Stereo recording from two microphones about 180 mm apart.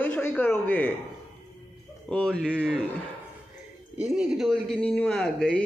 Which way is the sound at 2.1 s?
Centre (ahead or behind).